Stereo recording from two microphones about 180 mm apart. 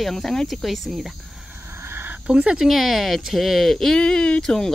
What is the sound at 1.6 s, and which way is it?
Speech, 15° right (ahead or behind).